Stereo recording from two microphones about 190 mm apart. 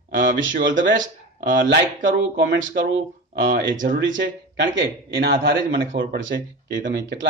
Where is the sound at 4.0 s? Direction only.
75° right (ahead or behind).